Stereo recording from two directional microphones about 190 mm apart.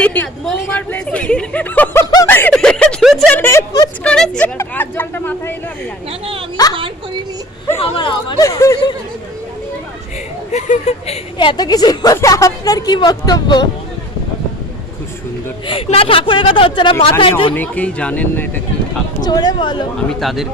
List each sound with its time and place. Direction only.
0.0 s a sound: 10° left (ahead or behind)
3.3 s a sound: 15° left (ahead or behind)
4.0 s speech: 5° left (ahead or behind)
6.6 s a woman's voice: 20° left (ahead or behind)
7.8 s a woman's voice: 25° left (ahead or behind)
10.5 s a woman's voice: 35° left (ahead or behind)
15.6 s a woman's voice: 30° left (ahead or behind)
17.6 s speech: 5° left (ahead or behind)
19.2 s a woman's voice: 20° left (ahead or behind)
20.1 s a man's voice: centre (ahead or behind)